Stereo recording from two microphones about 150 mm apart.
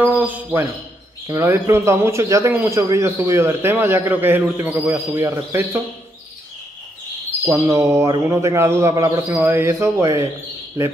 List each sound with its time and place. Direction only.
0.0 s a man's voice: 10° right (ahead or behind)
7.5 s a man's voice: 20° right (ahead or behind)